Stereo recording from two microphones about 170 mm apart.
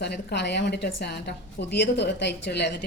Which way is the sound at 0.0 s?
75° left (ahead or behind).